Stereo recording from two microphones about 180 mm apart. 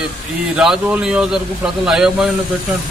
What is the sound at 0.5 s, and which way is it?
A man's voice, 5° right (ahead or behind).